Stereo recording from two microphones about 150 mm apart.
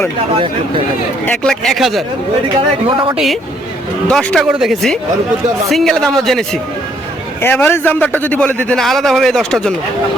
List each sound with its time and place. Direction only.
1.3 s a man's voice: 5° left (ahead or behind)
2.6 s speech: 35° right (ahead or behind)
4.1 s a man's voice: 5° left (ahead or behind)
7.4 s a man's voice: 15° left (ahead or behind)